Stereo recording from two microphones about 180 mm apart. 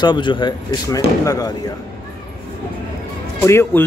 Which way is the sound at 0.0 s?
25° left (ahead or behind).